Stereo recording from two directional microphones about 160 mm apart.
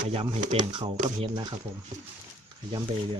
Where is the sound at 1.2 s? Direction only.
30° right (ahead or behind).